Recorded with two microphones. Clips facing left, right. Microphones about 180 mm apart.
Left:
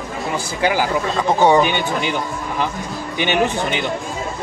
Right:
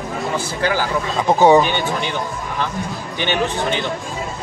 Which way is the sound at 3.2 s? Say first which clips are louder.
Left 2 dB; 15° left (ahead or behind).